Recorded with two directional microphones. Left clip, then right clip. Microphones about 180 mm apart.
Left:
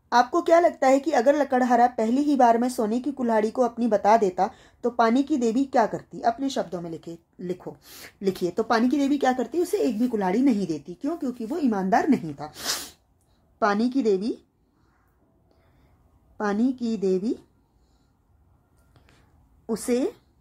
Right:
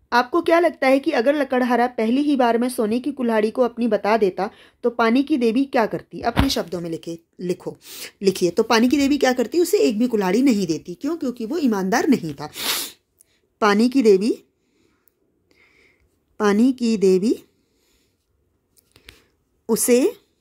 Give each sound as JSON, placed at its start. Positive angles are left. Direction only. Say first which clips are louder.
{"t": 0.1, "sound": "a woman's voice", "louder": "right 2 dB", "side_deg": -10}
{"t": 16.3, "sound": "a woman's voice", "louder": "right 7 dB", "side_deg": -35}
{"t": 19.6, "sound": "a woman's voice", "louder": "right 9 dB", "side_deg": -35}